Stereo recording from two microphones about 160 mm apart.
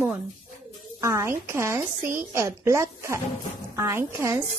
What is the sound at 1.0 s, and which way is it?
A woman's voice, 20° right (ahead or behind).